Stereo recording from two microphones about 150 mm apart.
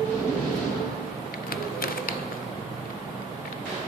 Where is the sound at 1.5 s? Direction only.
75° left (ahead or behind).